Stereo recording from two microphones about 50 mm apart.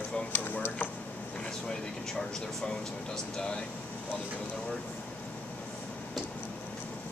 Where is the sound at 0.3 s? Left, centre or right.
Left.